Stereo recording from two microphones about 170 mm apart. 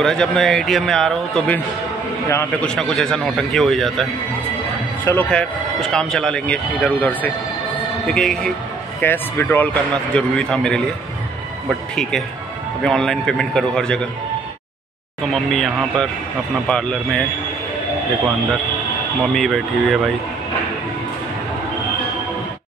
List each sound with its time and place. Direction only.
0.0 s a man's voice: 5° left (ahead or behind)
2.2 s speech: 15° left (ahead or behind)
2.7 s a man's voice: 5° left (ahead or behind)
11.9 s a man's voice: 5° left (ahead or behind)
15.3 s a man's voice: centre (ahead or behind)
19.3 s a man's voice: centre (ahead or behind)